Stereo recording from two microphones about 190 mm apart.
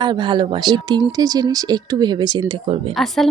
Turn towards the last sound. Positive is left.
turn(degrees=0)  # may be behind; listen again after turning